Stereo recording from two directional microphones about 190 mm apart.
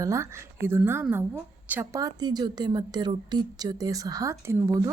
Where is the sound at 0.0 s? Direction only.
15° right (ahead or behind).